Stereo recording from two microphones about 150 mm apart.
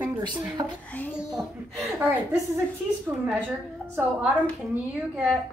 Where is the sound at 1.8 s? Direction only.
15° right (ahead or behind).